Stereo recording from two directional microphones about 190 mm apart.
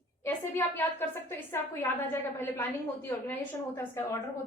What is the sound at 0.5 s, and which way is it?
A woman's voice, 10° left (ahead or behind).